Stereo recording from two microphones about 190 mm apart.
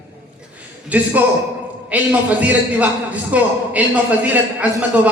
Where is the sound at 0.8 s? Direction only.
10° right (ahead or behind).